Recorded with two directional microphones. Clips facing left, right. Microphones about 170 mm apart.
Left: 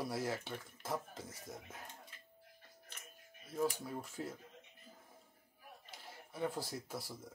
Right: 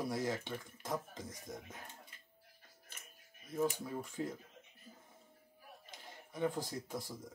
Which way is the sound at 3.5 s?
5° left (ahead or behind).